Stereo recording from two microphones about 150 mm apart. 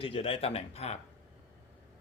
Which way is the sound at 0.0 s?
40° left (ahead or behind).